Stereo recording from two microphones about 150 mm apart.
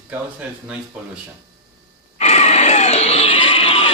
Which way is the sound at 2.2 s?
50° left (ahead or behind).